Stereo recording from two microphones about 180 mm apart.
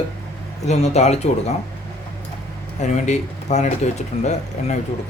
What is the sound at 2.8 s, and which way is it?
Speech, 40° left (ahead or behind).